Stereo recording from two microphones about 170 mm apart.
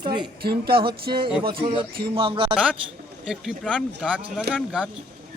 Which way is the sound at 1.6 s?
30° right (ahead or behind).